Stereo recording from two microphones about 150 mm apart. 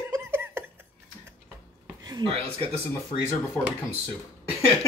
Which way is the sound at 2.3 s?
40° right (ahead or behind).